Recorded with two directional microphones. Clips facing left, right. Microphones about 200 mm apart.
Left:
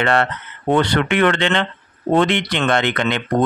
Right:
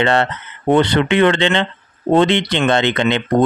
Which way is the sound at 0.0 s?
25° right (ahead or behind).